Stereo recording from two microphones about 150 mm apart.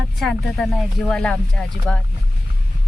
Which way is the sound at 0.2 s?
Centre (ahead or behind).